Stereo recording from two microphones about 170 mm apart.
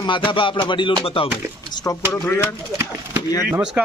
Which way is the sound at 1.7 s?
20° left (ahead or behind).